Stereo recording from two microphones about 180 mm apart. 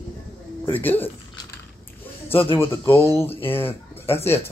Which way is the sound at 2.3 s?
30° left (ahead or behind).